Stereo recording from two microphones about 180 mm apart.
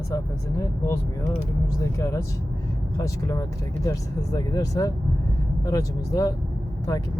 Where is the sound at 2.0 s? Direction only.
15° left (ahead or behind).